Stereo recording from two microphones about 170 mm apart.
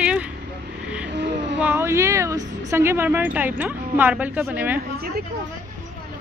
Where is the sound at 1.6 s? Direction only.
10° right (ahead or behind).